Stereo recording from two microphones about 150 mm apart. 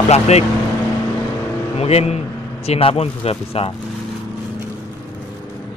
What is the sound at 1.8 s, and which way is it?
Speech, 45° left (ahead or behind).